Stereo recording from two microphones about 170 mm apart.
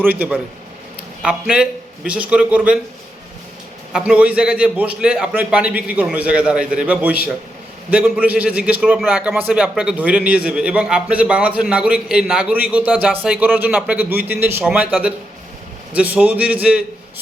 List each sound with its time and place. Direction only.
0.0 s a man's voice: 10° right (ahead or behind)
3.9 s a man's voice: 5° right (ahead or behind)